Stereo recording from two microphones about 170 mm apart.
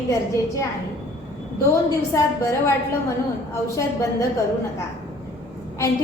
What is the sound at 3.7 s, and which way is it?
Speech, 20° left (ahead or behind).